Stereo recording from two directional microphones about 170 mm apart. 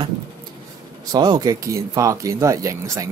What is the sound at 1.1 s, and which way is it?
Speech, 25° right (ahead or behind).